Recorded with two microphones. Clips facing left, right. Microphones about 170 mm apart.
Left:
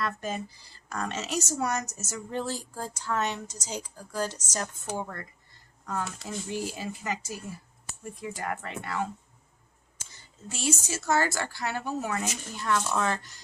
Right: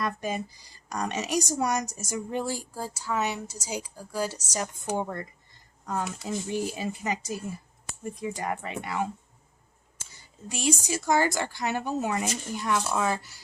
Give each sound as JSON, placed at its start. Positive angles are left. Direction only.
{"t": 0.0, "sound": "a woman's voice", "side_deg": -10}
{"t": 4.9, "sound": "a woman's voice", "side_deg": -20}
{"t": 10.5, "sound": "a woman's voice", "side_deg": -15}